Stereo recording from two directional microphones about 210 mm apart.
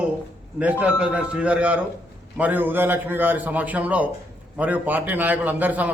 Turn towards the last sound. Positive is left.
turn(degrees=-5)  # may be behind; listen again after turning